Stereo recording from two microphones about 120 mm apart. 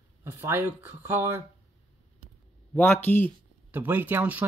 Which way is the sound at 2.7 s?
15° left (ahead or behind).